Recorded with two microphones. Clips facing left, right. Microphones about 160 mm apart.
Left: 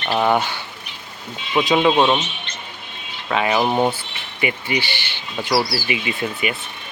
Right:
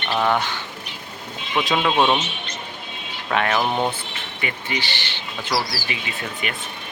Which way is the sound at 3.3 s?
5° left (ahead or behind).